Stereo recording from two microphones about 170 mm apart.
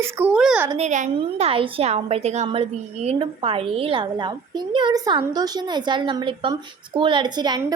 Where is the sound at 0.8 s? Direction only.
45° right (ahead or behind).